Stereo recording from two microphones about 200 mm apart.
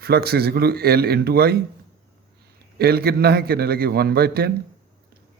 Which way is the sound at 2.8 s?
50° right (ahead or behind).